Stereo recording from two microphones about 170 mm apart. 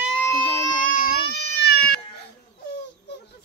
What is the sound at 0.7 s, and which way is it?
Baby cry, 55° left (ahead or behind).